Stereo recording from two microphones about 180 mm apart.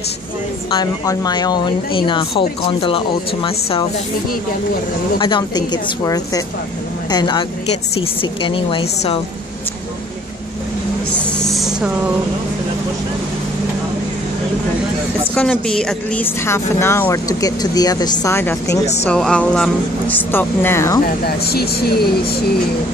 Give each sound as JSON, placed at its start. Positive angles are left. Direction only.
{"t": 0.7, "sound": "a woman's voice", "side_deg": 20}
{"t": 5.2, "sound": "a woman's voice", "side_deg": 25}
{"t": 11.3, "sound": "a sound", "side_deg": 0}
{"t": 15.3, "sound": "speech", "side_deg": 5}
{"t": 21.5, "sound": "speech", "side_deg": 60}